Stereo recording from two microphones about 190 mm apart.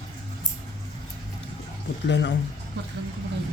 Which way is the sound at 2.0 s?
65° left (ahead or behind).